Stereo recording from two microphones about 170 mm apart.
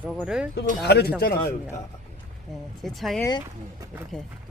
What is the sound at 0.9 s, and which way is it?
Speech, 75° left (ahead or behind).